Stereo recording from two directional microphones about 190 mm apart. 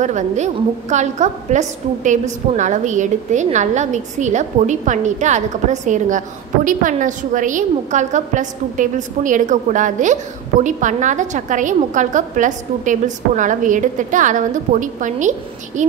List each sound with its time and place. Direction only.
0.0 s a woman's voice: 40° right (ahead or behind)